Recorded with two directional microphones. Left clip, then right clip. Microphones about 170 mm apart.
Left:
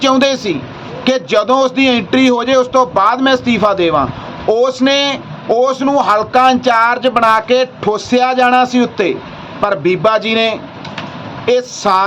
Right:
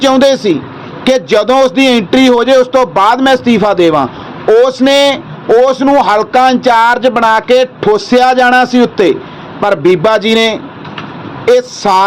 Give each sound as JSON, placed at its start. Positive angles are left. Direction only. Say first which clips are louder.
{"t": 0.0, "sound": "a man's voice", "louder": "right 4 dB", "side_deg": -30}